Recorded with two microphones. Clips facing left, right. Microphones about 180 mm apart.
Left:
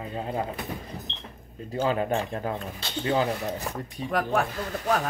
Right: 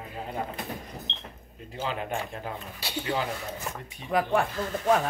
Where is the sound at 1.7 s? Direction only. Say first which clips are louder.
Left 7 dB; 45° left (ahead or behind).